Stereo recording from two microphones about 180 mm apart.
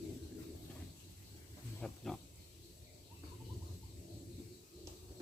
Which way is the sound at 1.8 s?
Centre (ahead or behind).